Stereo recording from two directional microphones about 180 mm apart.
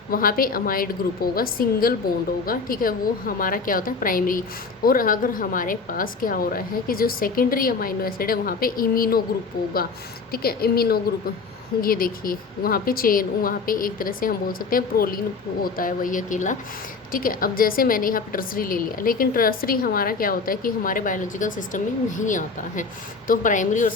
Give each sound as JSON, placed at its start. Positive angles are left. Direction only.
{"t": 0.1, "sound": "a woman's voice", "side_deg": 55}
{"t": 10.3, "sound": "a woman's voice", "side_deg": 55}